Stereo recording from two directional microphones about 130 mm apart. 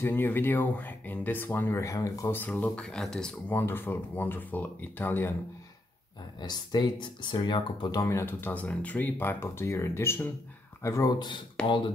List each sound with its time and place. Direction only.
0.0 s speech: 15° left (ahead or behind)
3.5 s speech: 15° left (ahead or behind)
6.4 s speech: 35° left (ahead or behind)
11.6 s speech: 5° left (ahead or behind)